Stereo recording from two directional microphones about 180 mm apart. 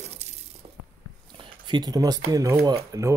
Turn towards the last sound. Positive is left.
turn(degrees=-20)  # may be behind; listen again after turning